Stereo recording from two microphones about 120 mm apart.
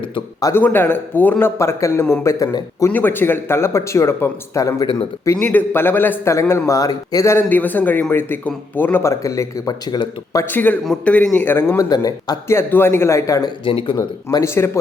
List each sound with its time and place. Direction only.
0.5 s speech: 15° left (ahead or behind)
2.9 s a man's voice: 15° left (ahead or behind); by 10.4 s 35° left (ahead or behind)
10.5 s a man's voice: 15° left (ahead or behind)
11.8 s speech: 30° left (ahead or behind)
12.5 s speech: 20° left (ahead or behind)
13.7 s speech: 50° left (ahead or behind)
13.9 s speech: 30° left (ahead or behind)